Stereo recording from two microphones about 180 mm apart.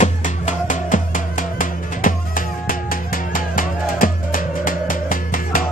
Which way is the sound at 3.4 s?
50° left (ahead or behind).